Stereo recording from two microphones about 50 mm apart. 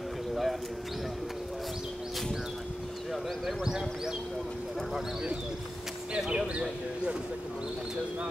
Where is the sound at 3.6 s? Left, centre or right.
Centre.